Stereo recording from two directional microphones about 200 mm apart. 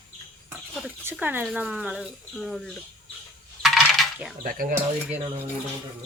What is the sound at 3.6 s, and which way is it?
Coin, centre (ahead or behind).